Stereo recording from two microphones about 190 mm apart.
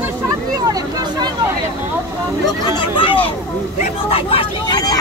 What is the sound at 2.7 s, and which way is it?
Speech, 25° left (ahead or behind).